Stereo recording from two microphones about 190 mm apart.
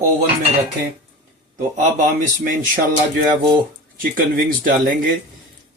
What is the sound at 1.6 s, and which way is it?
Speech, 40° right (ahead or behind).